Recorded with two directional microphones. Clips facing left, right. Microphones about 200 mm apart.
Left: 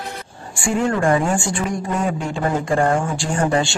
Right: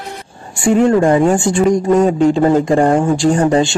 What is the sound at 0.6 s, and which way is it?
Speech, 20° right (ahead or behind).